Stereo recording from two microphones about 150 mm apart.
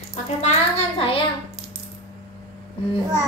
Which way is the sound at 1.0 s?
40° left (ahead or behind).